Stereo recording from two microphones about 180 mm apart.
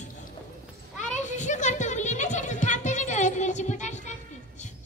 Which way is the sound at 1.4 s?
40° left (ahead or behind).